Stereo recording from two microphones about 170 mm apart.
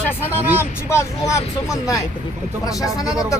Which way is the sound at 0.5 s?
15° left (ahead or behind).